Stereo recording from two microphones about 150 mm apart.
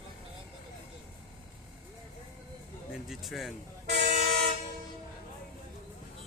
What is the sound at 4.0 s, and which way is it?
Train, 50° right (ahead or behind).